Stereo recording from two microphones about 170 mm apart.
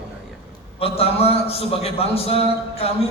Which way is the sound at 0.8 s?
35° left (ahead or behind).